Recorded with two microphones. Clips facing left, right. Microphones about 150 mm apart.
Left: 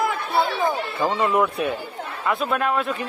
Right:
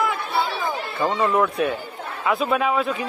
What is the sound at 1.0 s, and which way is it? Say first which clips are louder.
Speech: right 1 dB; 5° left (ahead or behind).